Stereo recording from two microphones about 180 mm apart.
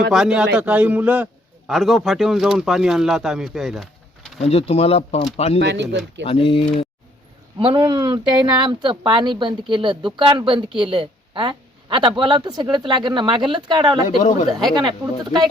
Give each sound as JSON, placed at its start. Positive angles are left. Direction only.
{"t": 0.1, "sound": "a man's voice", "side_deg": -5}
{"t": 4.4, "sound": "speech", "side_deg": 35}
{"t": 5.5, "sound": "speech", "side_deg": -75}
{"t": 6.2, "sound": "speech", "side_deg": 30}
{"t": 7.6, "sound": "a woman's voice", "side_deg": -30}